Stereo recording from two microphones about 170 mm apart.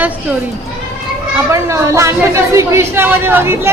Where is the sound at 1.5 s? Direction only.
15° right (ahead or behind).